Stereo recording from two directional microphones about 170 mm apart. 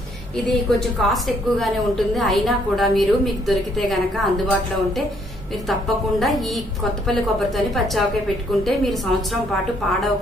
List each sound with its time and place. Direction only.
0.7 s a woman's voice: centre (ahead or behind)